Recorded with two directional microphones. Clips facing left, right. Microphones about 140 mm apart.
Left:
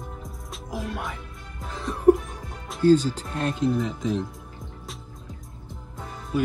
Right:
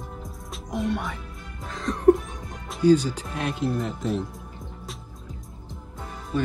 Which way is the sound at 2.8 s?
10° right (ahead or behind).